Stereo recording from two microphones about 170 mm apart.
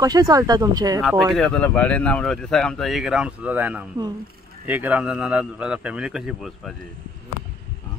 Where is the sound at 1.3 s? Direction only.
5° left (ahead or behind).